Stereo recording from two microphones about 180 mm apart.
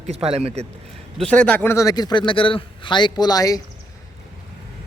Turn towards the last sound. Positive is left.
turn(degrees=20)  # may be behind; listen again after turning